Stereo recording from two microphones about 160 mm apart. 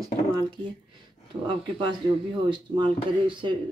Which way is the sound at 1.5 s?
30° right (ahead or behind).